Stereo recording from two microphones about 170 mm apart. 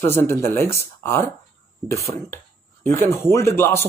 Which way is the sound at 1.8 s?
15° left (ahead or behind).